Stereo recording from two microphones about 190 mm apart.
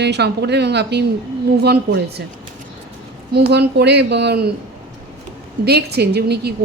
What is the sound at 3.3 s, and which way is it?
A woman's voice, 60° right (ahead or behind).